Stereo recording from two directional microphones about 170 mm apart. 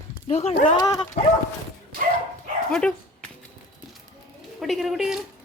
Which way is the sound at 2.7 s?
5° left (ahead or behind).